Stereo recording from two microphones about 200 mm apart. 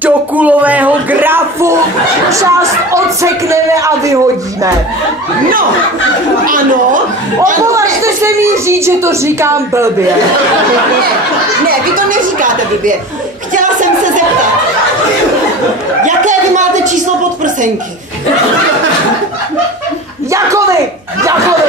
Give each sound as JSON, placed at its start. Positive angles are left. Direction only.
{"t": 0.0, "sound": "speech", "side_deg": -5}
{"t": 6.4, "sound": "speech", "side_deg": -45}
{"t": 8.0, "sound": "speech", "side_deg": -15}
{"t": 11.9, "sound": "a woman's voice", "side_deg": -40}
{"t": 16.0, "sound": "a sound", "side_deg": -40}
{"t": 20.2, "sound": "a sound", "side_deg": -15}